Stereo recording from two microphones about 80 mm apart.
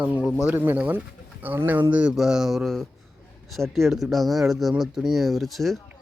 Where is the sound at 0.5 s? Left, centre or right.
Right.